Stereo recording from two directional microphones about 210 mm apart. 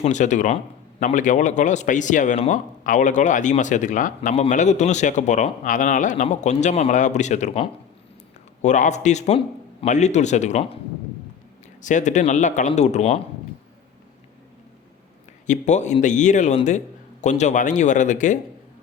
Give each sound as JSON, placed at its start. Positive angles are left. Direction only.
{"t": 0.0, "sound": "a man's voice", "side_deg": 35}
{"t": 11.8, "sound": "a man's voice", "side_deg": 35}
{"t": 15.4, "sound": "a man's voice", "side_deg": 35}